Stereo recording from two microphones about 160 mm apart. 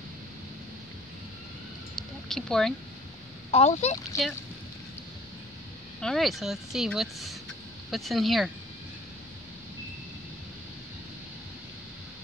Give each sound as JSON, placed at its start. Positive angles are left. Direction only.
{"t": 2.0, "sound": "a sound", "side_deg": 5}
{"t": 3.5, "sound": "speech", "side_deg": 45}
{"t": 5.9, "sound": "speech", "side_deg": 0}